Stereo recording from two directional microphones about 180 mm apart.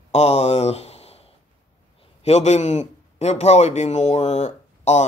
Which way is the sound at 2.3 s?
40° left (ahead or behind).